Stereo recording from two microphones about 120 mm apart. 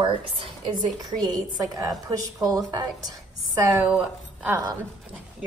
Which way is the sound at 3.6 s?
10° right (ahead or behind).